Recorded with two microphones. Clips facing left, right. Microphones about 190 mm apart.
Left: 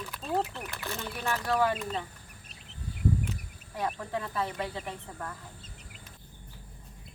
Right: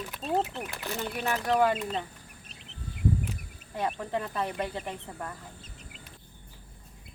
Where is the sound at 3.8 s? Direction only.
20° right (ahead or behind).